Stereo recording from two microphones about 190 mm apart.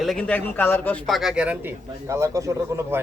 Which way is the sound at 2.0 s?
15° right (ahead or behind).